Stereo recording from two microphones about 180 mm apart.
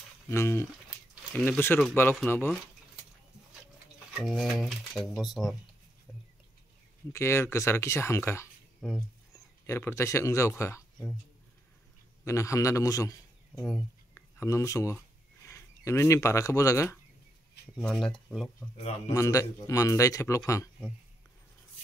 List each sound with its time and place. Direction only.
0.3 s a man's voice: 15° left (ahead or behind)
4.2 s speech: centre (ahead or behind)
7.1 s a man's voice: 15° left (ahead or behind)
9.7 s a man's voice: 15° left (ahead or behind)
12.3 s a man's voice: 15° left (ahead or behind)
14.1 s speech: 15° left (ahead or behind)
17.7 s speech: 5° left (ahead or behind)
18.8 s a man's voice: 35° left (ahead or behind)
19.1 s a man's voice: 20° left (ahead or behind)